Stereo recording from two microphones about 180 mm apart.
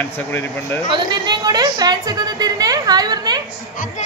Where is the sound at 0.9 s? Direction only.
25° right (ahead or behind).